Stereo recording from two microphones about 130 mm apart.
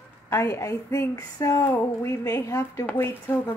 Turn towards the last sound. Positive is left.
turn(degrees=15)  # may be behind; listen again after turning